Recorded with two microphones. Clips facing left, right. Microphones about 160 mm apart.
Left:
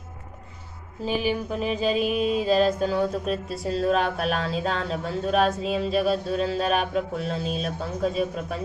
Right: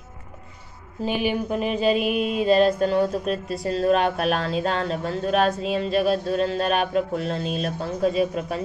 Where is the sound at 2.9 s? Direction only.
Centre (ahead or behind).